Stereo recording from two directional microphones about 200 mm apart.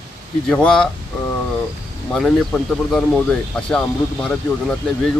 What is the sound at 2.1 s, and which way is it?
Speech, centre (ahead or behind).